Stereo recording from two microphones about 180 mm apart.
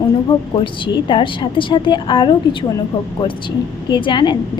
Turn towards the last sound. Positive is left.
turn(degrees=25)  # may be behind; listen again after turning